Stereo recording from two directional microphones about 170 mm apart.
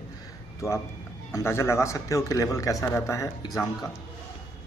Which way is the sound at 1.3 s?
15° left (ahead or behind).